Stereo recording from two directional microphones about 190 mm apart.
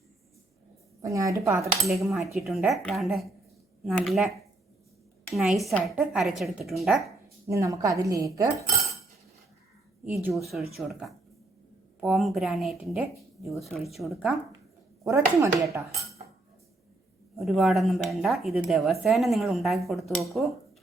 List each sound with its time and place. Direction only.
1.0 s cutlery: 15° right (ahead or behind)
2.1 s a woman's voice: centre (ahead or behind)
5.3 s a woman's voice: centre (ahead or behind)
7.4 s cutlery: 15° right (ahead or behind)
10.3 s a woman's voice: centre (ahead or behind)
15.0 s cutlery: 15° right (ahead or behind)
17.3 s a woman's voice: centre (ahead or behind)